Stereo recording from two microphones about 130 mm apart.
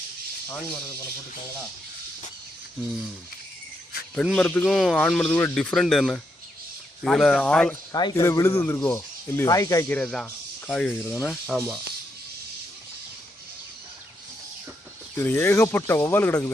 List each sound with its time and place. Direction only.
4.1 s a man's voice: 5° left (ahead or behind)
4.6 s speech: centre (ahead or behind)
7.9 s speech: 30° left (ahead or behind)
9.9 s a man's voice: 5° left (ahead or behind)
15.1 s speech: 20° left (ahead or behind)